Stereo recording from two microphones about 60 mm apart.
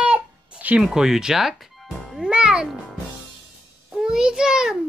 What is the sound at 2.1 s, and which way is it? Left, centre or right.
Music, centre.